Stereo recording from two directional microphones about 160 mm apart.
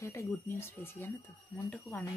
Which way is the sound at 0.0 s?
20° left (ahead or behind).